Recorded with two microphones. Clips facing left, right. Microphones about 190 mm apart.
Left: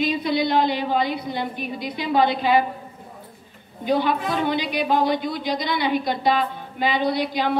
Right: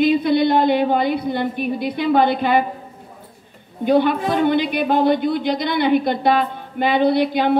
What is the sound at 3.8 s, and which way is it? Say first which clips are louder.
A woman's voice: right 5 dB; 55° right (ahead or behind).